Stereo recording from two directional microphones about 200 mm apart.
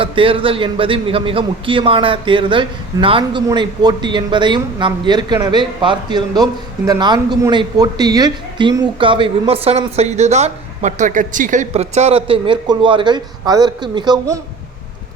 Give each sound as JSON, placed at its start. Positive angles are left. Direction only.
{"t": 0.0, "sound": "a man's voice", "side_deg": -25}